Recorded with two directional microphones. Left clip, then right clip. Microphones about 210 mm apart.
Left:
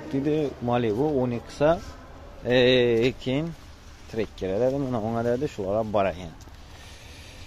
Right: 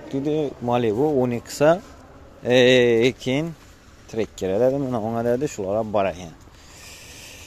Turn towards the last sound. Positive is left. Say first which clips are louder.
# right 2 dB
turn(degrees=-15)  # may be behind; listen again after turning